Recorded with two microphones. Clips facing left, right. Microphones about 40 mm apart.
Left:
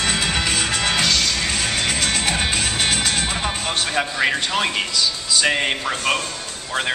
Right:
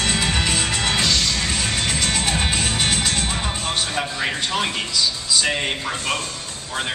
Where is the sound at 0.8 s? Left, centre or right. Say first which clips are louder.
Left 1 dB; left.